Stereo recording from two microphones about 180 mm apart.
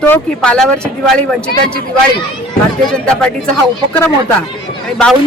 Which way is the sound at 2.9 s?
5° left (ahead or behind).